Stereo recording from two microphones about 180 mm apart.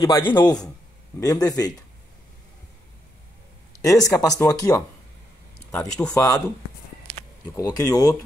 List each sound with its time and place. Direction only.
0.2 s speech: 25° left (ahead or behind)
3.8 s speech: 20° left (ahead or behind)
5.8 s speech: 5° left (ahead or behind)
6.1 s speech: 20° left (ahead or behind)
7.5 s speech: 20° left (ahead or behind)